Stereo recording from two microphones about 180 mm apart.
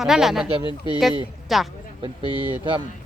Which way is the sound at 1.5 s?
Centre (ahead or behind).